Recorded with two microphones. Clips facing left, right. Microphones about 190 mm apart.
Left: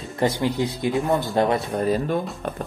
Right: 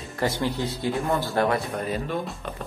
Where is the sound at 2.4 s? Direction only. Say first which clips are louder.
Left 6 dB; 50° left (ahead or behind).